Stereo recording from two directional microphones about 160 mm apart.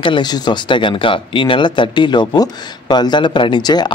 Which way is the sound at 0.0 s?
30° left (ahead or behind).